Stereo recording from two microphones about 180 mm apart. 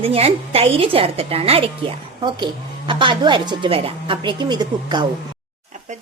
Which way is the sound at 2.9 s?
25° right (ahead or behind).